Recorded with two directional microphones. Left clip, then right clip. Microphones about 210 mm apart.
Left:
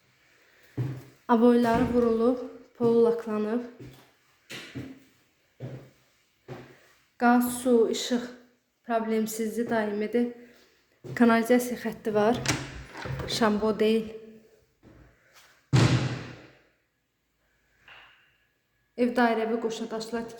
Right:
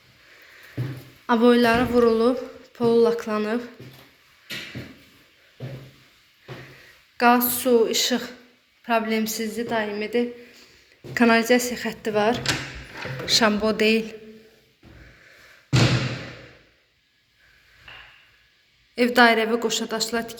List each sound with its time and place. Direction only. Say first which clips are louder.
1.3 s a woman's voice: right 4 dB; 10° left (ahead or behind)
7.2 s a woman's voice: right 5 dB; 5° left (ahead or behind)
18.9 s a woman's voice: right 8 dB; centre (ahead or behind)